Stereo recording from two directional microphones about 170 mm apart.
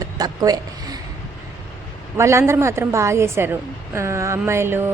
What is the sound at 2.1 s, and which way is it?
A woman's voice, 15° right (ahead or behind).